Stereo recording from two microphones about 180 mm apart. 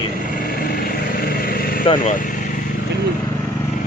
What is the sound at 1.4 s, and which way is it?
Vehicle, 55° left (ahead or behind).